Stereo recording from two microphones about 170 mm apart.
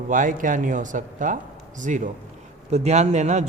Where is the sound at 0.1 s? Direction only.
50° right (ahead or behind).